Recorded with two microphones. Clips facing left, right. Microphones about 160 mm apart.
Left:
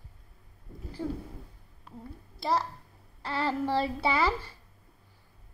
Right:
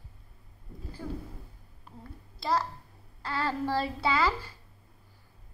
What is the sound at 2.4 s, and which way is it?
A child's voice, 30° left (ahead or behind).